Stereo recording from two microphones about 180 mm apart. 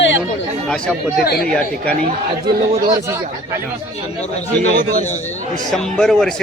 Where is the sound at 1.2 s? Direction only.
55° left (ahead or behind).